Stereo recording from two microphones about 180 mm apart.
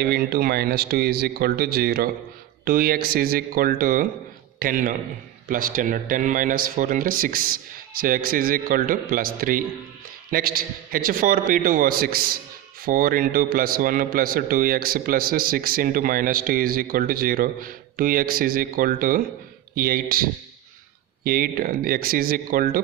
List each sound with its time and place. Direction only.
0.0 s a man's voice: 60° right (ahead or behind)